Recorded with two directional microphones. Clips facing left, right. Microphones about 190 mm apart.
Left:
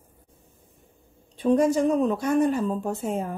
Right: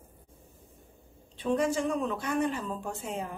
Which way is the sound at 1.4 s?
40° left (ahead or behind).